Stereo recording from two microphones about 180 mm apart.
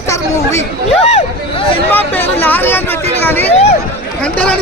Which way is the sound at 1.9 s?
10° left (ahead or behind).